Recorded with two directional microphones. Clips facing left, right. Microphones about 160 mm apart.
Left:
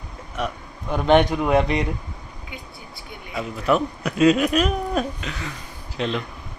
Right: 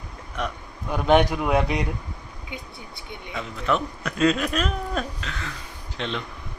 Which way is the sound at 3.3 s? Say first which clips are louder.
Left 4 dB; 10° left (ahead or behind).